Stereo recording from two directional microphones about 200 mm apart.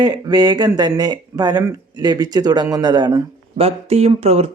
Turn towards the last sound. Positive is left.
turn(degrees=-30)  # may be behind; listen again after turning